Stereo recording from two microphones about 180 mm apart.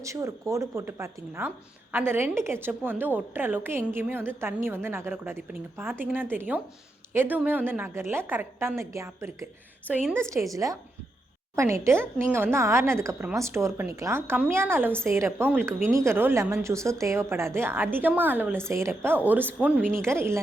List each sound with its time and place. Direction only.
0.0 s a woman's voice: 15° right (ahead or behind)